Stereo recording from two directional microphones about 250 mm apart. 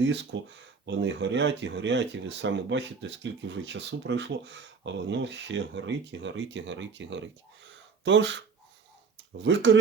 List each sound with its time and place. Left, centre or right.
0.3 s speech: right
9.4 s speech: right